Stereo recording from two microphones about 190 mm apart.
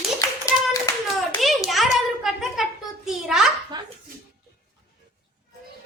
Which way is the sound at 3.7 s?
20° right (ahead or behind).